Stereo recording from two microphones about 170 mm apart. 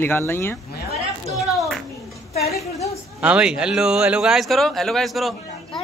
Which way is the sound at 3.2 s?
5° right (ahead or behind).